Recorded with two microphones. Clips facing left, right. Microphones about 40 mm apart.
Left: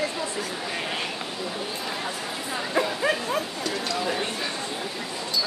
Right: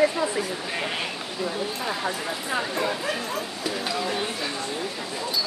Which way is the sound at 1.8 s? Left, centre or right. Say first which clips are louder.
Right 3 dB; centre.